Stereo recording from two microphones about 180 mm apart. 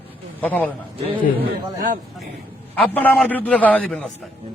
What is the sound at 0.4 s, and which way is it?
Speech, 10° left (ahead or behind).